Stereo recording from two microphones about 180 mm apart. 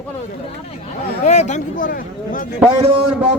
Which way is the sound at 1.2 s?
40° left (ahead or behind).